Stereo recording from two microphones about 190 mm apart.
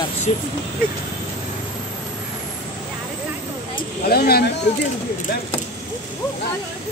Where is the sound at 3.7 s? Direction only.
55° left (ahead or behind).